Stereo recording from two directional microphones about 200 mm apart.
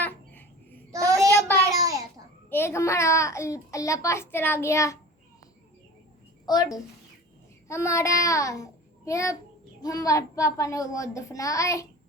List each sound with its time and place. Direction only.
0.0 s babbling: 10° left (ahead or behind)
0.9 s child singing: 15° right (ahead or behind)
1.7 s babbling: 15° right (ahead or behind)
2.5 s a child's voice: 10° left (ahead or behind)
6.4 s a child's voice: 20° left (ahead or behind)